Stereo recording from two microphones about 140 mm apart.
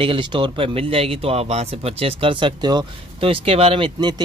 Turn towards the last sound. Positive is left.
turn(degrees=-35)  # may be behind; listen again after turning